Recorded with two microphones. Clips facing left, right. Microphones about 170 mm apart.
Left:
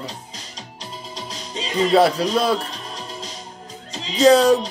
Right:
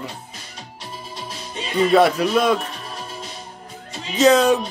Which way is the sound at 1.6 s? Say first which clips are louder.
Right 1 dB; 30° left (ahead or behind).